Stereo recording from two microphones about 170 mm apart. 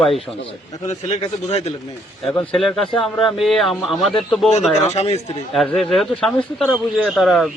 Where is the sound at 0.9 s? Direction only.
40° left (ahead or behind).